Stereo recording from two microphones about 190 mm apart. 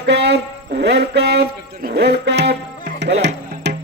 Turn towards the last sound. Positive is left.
turn(degrees=-65)  # may be behind; listen again after turning